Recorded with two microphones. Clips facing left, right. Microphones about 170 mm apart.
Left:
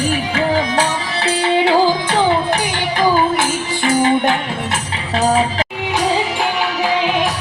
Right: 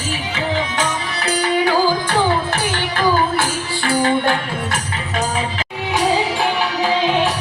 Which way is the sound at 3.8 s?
20° left (ahead or behind).